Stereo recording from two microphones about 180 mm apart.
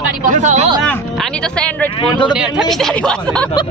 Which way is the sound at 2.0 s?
25° left (ahead or behind).